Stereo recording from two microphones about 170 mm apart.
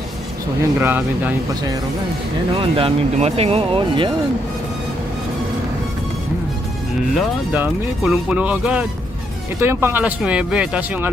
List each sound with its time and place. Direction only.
0.7 s speech: 10° right (ahead or behind)
2.6 s speech: 35° right (ahead or behind)
7.2 s speech: 5° right (ahead or behind)